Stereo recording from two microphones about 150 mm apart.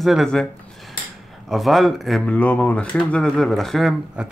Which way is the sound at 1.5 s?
Centre (ahead or behind).